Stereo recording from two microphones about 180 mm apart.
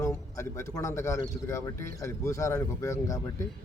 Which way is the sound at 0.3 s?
15° left (ahead or behind).